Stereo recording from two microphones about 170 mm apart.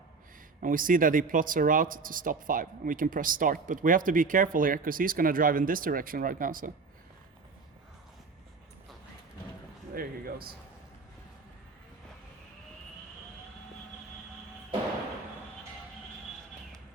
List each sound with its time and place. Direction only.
0.6 s speech: 55° right (ahead or behind)
9.9 s speech: 60° right (ahead or behind)